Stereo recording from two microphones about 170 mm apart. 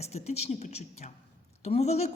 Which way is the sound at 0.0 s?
40° left (ahead or behind).